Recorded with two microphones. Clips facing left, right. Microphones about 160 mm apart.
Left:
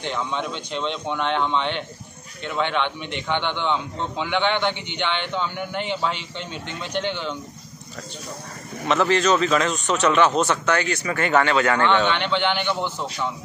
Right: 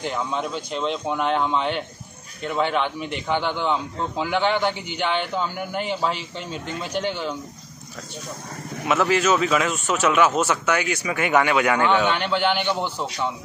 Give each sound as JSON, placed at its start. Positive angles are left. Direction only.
{"t": 0.0, "sound": "speech", "side_deg": -5}
{"t": 4.6, "sound": "speech", "side_deg": -40}
{"t": 5.6, "sound": "speech", "side_deg": -5}
{"t": 7.0, "sound": "speech", "side_deg": -40}
{"t": 8.8, "sound": "speech", "side_deg": -5}